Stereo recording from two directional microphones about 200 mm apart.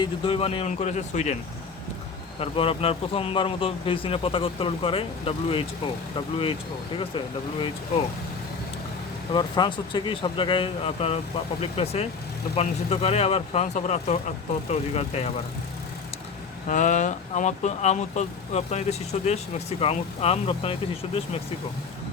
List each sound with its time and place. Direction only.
0.0 s speech: 30° left (ahead or behind)
2.4 s a man's voice: 30° left (ahead or behind)
9.3 s a man's voice: 25° left (ahead or behind)
16.6 s speech: 40° left (ahead or behind)